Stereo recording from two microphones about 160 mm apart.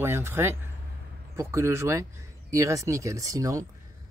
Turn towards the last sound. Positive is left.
turn(degrees=-20)  # may be behind; listen again after turning